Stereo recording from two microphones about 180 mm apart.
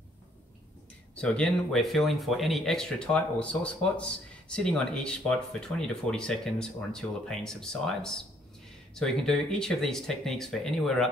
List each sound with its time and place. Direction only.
1.1 s speech: 5° left (ahead or behind)